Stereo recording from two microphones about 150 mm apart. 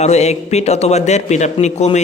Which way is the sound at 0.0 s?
45° left (ahead or behind).